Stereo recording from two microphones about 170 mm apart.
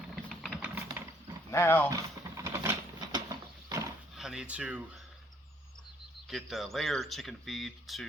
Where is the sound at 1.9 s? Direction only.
15° right (ahead or behind).